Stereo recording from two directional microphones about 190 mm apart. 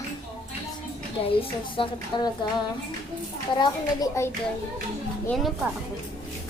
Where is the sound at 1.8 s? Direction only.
25° left (ahead or behind).